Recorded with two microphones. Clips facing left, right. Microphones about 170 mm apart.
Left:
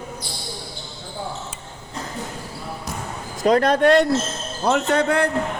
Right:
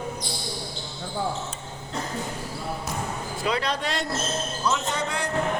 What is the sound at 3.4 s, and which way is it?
Speech, 45° left (ahead or behind).